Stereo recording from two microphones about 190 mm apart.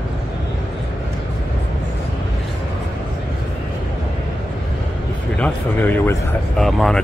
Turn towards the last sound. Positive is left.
turn(degrees=0)  # may be behind; listen again after turning